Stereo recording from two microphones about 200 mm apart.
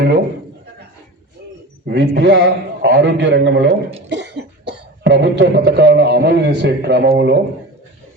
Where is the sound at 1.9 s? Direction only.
60° right (ahead or behind).